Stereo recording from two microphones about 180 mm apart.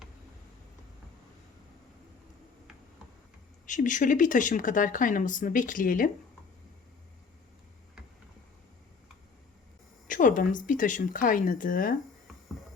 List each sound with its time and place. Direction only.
3.7 s speech: 45° left (ahead or behind)
10.1 s speech: 45° left (ahead or behind)